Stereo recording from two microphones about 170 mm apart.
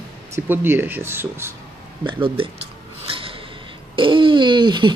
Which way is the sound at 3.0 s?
30° right (ahead or behind).